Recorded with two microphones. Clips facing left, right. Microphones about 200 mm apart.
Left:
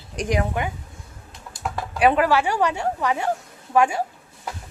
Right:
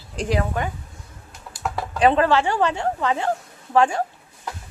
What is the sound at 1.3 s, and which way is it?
Computer keyboard, centre (ahead or behind).